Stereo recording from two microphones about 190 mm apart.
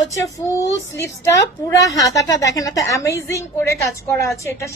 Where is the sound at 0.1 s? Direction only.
15° left (ahead or behind).